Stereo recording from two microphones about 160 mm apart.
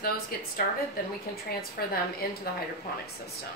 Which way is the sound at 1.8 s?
75° left (ahead or behind).